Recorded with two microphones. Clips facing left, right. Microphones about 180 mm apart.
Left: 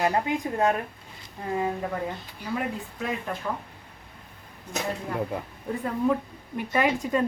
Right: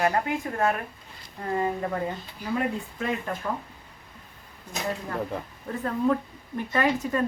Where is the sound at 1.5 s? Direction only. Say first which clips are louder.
Right 1 dB; centre (ahead or behind).